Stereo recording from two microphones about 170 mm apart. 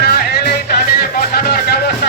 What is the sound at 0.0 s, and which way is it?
Music, 70° left (ahead or behind).